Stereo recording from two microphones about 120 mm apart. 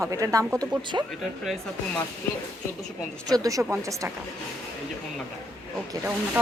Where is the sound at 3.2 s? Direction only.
30° right (ahead or behind).